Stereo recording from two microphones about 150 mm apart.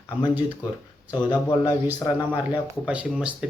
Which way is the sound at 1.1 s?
30° left (ahead or behind).